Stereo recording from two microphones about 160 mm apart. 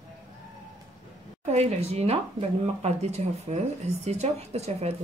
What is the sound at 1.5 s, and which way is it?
Speech, 45° right (ahead or behind).